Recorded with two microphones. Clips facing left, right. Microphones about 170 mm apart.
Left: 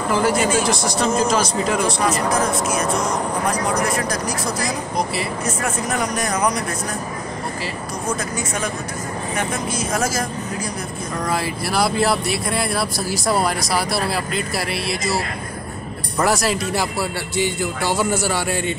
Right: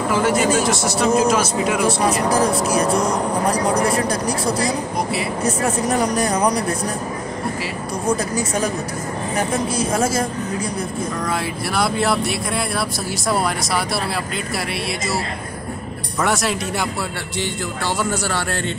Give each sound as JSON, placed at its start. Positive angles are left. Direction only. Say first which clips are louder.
{"t": 0.1, "sound": "speech", "louder": "even", "side_deg": 0}
{"t": 2.2, "sound": "speech", "louder": "right 2 dB", "side_deg": -35}
{"t": 9.4, "sound": "speech", "louder": "right 5 dB", "side_deg": -30}
{"t": 11.2, "sound": "speech", "louder": "even", "side_deg": 0}
{"t": 16.2, "sound": "speech", "louder": "left 1 dB", "side_deg": 0}